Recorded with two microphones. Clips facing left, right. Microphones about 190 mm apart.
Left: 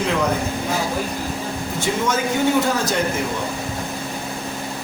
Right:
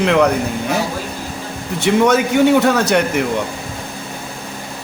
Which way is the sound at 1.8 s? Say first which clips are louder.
Right 9 dB; 70° right (ahead or behind).